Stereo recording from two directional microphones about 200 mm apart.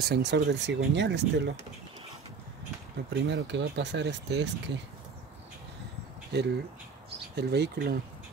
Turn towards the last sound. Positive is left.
turn(degrees=-55)  # may be behind; listen again after turning